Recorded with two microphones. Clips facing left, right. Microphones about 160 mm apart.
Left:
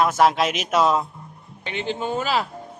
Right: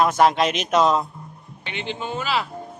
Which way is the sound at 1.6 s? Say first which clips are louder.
Left 3 dB; 40° left (ahead or behind).